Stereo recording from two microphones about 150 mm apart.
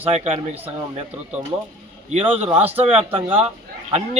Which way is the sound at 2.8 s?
40° right (ahead or behind).